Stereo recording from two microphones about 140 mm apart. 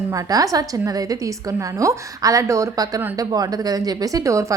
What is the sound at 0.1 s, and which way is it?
A woman's voice, 25° right (ahead or behind).